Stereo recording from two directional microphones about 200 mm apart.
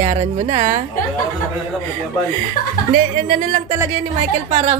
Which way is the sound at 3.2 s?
40° right (ahead or behind).